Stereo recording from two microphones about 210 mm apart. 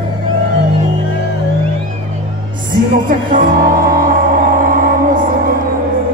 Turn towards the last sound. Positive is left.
turn(degrees=-40)  # may be behind; listen again after turning